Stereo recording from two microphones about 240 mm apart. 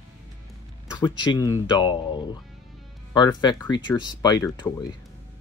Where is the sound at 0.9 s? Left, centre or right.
Centre.